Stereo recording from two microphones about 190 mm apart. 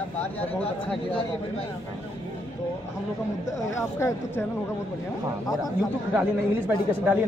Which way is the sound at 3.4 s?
15° left (ahead or behind).